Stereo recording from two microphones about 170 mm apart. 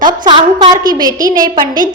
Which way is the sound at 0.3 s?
25° right (ahead or behind).